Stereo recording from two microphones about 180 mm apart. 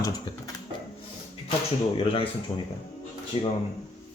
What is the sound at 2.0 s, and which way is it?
Speech, 30° left (ahead or behind).